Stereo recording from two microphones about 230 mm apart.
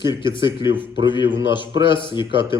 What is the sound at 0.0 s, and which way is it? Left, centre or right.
A man's voice, centre.